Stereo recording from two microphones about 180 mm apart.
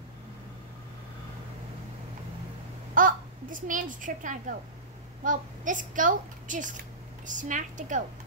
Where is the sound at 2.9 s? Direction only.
50° right (ahead or behind).